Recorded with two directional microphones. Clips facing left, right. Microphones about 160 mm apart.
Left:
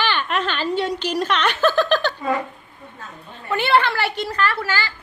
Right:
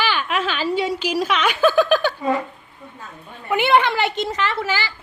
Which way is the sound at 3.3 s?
15° right (ahead or behind).